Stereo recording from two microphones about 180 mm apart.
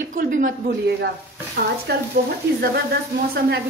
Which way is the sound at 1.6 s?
55° right (ahead or behind).